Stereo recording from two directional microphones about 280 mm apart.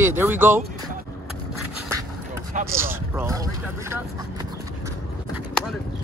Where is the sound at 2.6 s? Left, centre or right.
Centre.